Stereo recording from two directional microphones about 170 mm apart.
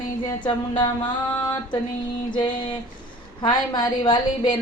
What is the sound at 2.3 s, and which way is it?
A woman's voice, 25° left (ahead or behind).